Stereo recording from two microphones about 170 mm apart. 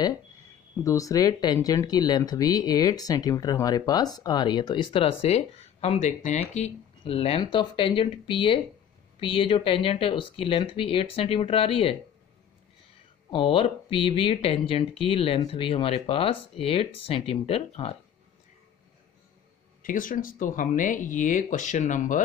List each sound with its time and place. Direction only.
0.8 s speech: 20° left (ahead or behind)
13.3 s speech: 30° left (ahead or behind)
19.8 s speech: 55° left (ahead or behind)